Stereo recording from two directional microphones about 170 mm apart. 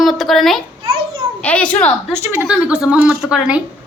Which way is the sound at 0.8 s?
30° right (ahead or behind).